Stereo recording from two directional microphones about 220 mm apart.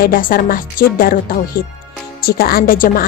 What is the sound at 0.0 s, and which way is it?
A woman's voice, 40° left (ahead or behind).